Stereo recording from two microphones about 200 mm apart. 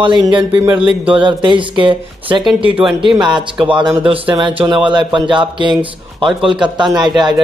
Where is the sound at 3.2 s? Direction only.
20° right (ahead or behind).